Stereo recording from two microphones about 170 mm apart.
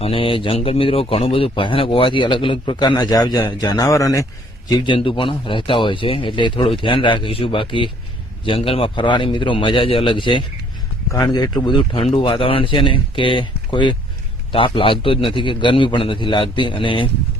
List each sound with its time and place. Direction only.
0.0 s speech: 30° left (ahead or behind)
4.7 s speech: 30° left (ahead or behind)